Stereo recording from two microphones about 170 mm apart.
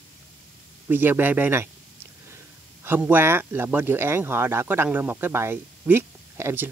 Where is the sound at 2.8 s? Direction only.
10° right (ahead or behind).